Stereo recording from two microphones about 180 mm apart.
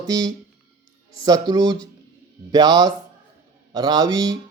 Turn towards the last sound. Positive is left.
turn(degrees=-20)  # may be behind; listen again after turning